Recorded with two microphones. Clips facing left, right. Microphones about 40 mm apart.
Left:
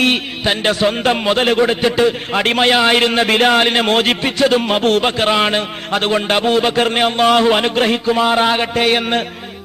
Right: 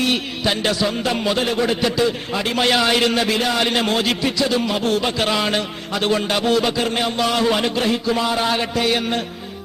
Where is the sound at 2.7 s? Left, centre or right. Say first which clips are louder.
Left 2 dB; left.